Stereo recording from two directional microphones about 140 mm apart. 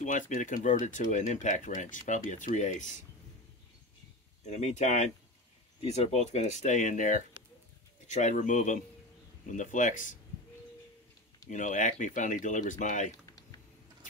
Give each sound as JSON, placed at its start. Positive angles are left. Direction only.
{"t": 0.0, "sound": "speech", "side_deg": 60}
{"t": 4.5, "sound": "speech", "side_deg": 55}
{"t": 11.5, "sound": "speech", "side_deg": 65}